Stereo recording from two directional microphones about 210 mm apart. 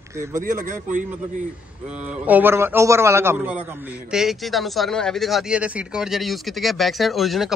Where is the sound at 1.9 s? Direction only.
5° right (ahead or behind).